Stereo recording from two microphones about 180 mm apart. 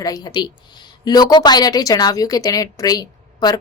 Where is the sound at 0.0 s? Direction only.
20° left (ahead or behind).